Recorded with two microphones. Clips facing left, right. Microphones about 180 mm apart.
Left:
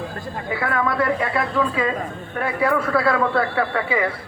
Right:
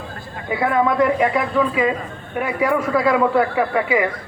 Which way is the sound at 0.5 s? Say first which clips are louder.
Right 5 dB; 20° right (ahead or behind).